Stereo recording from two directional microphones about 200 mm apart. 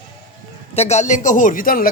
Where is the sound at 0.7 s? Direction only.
30° left (ahead or behind).